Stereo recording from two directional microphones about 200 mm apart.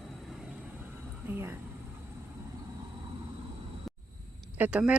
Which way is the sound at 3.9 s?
Centre (ahead or behind).